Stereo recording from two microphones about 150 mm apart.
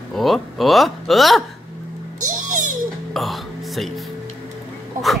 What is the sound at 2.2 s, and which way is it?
Music, 60° right (ahead or behind).